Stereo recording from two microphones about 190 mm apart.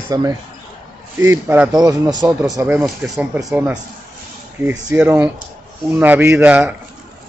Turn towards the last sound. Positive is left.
turn(degrees=-10)  # may be behind; listen again after turning